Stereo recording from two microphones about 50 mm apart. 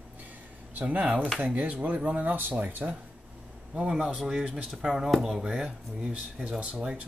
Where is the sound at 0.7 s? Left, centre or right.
Right.